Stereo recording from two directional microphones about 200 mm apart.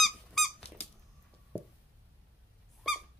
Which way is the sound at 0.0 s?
Centre (ahead or behind).